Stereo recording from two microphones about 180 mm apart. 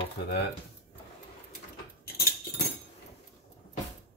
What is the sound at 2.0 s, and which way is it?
Keys jangling, 60° left (ahead or behind).